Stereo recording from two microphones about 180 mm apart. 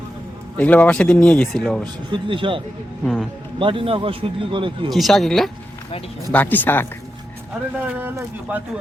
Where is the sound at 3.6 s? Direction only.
30° right (ahead or behind).